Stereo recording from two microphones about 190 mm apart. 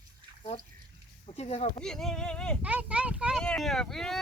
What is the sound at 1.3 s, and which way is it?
Speech, 30° left (ahead or behind).